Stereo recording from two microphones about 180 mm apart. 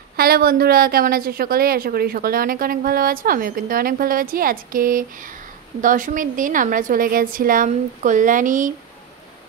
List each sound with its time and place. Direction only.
0.1 s a woman's voice: 60° right (ahead or behind)